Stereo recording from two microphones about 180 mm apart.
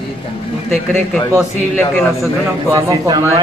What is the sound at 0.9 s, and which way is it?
Speech, centre (ahead or behind).